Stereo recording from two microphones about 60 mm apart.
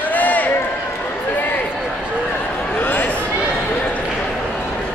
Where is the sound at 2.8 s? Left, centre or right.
Left.